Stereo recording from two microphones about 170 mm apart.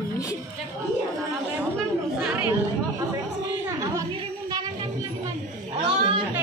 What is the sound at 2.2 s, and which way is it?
Speech, 10° right (ahead or behind).